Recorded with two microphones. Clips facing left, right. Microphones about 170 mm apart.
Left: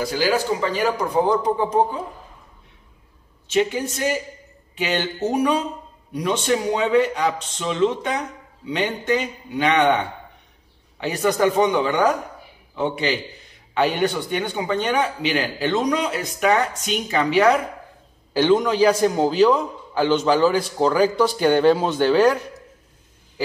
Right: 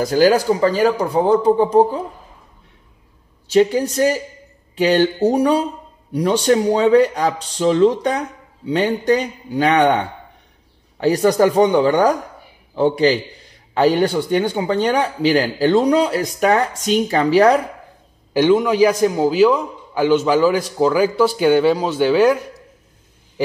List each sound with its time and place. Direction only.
0.0 s speech: 40° right (ahead or behind)
3.4 s speech: 35° right (ahead or behind)
18.3 s a man's voice: 10° right (ahead or behind)